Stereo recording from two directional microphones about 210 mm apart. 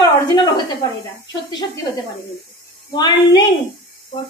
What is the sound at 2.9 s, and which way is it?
Speech, 20° left (ahead or behind).